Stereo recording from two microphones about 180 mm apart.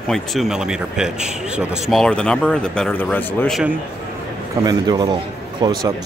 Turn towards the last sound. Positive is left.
turn(degrees=-25)  # may be behind; listen again after turning